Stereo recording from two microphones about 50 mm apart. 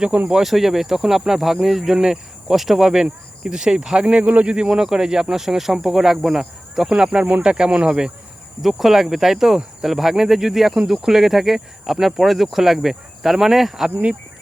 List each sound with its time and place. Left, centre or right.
0.4 s speech: centre; by 4.5 s right
4.5 s speech: centre
8.6 s speech: centre